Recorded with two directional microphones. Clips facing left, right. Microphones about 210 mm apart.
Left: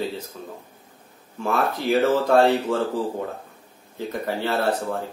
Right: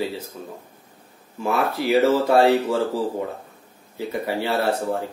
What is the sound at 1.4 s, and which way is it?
A man's voice, 10° right (ahead or behind).